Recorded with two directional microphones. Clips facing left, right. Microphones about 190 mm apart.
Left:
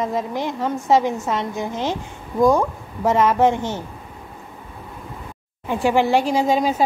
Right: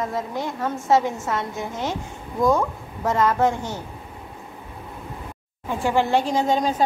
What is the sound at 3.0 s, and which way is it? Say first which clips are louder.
Speech: left 4 dB; 20° left (ahead or behind).